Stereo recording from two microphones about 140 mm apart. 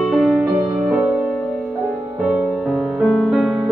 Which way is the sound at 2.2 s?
5° right (ahead or behind).